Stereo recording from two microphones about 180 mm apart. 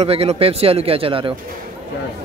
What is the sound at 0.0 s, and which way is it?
Speech, 35° right (ahead or behind).